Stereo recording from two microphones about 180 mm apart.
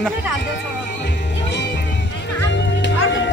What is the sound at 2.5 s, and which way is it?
Music, 85° left.